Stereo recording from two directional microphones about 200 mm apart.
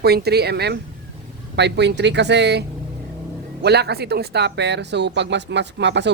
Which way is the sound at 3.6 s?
55° right (ahead or behind).